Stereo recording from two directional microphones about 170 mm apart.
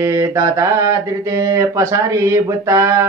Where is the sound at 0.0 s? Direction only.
20° right (ahead or behind).